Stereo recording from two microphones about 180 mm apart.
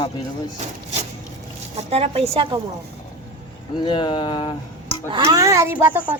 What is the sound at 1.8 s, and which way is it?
Speech, 35° right (ahead or behind).